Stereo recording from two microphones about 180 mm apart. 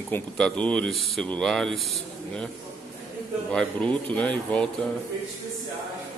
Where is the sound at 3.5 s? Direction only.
5° left (ahead or behind).